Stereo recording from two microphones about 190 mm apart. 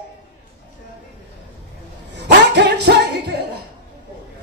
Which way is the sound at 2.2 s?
65° right (ahead or behind).